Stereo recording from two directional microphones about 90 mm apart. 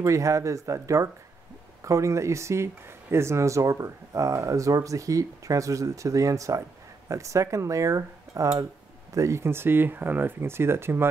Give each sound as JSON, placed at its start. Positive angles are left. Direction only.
{"t": 0.0, "sound": "speech", "side_deg": -35}